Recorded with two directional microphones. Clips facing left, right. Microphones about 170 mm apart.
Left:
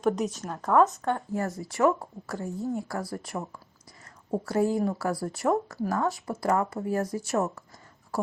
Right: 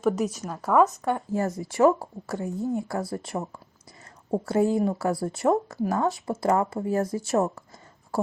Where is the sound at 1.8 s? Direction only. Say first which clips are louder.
Right 3 dB; 30° right (ahead or behind).